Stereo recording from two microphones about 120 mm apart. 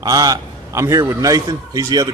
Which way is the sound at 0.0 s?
30° right (ahead or behind).